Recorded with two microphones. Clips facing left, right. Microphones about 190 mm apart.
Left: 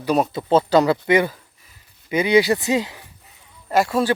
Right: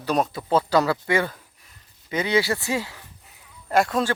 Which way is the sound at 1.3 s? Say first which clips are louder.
Left 1 dB; centre (ahead or behind).